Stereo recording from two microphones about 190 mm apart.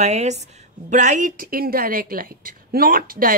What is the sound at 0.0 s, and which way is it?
A woman's voice, 35° right (ahead or behind).